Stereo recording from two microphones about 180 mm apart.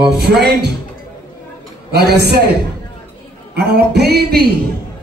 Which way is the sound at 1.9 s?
65° right (ahead or behind).